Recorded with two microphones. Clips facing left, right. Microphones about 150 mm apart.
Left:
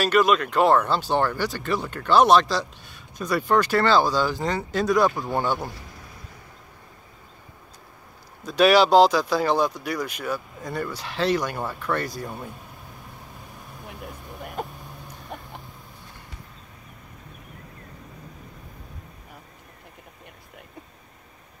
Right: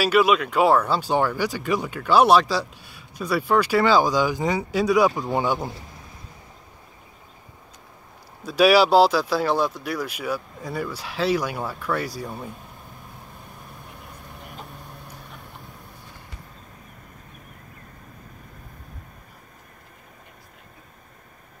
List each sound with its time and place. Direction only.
0.0 s speech: 5° right (ahead or behind)
8.5 s speech: 5° right (ahead or behind)
14.6 s vehicle: 55° left (ahead or behind)